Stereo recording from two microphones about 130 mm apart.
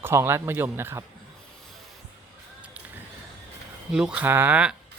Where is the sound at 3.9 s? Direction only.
10° right (ahead or behind).